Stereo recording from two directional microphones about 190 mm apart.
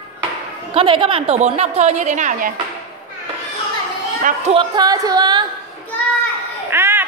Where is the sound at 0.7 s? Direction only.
30° right (ahead or behind); by 2.5 s 45° right (ahead or behind).